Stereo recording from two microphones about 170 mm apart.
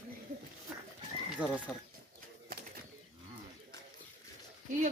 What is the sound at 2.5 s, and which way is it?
Bird, 60° right (ahead or behind).